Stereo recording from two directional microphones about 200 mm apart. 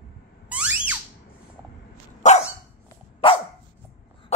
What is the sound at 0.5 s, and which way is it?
Squeak, 5° right (ahead or behind).